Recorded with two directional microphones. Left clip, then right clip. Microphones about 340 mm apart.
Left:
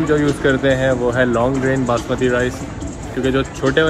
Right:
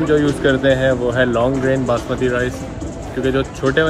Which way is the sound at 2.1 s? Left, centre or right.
Centre.